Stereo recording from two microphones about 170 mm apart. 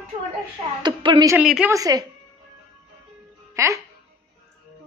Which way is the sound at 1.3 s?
5° right (ahead or behind).